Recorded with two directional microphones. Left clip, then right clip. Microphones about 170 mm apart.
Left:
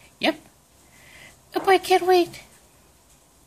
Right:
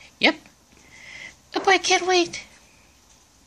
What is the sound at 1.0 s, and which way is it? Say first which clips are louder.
Speech: right 8 dB; 35° right (ahead or behind).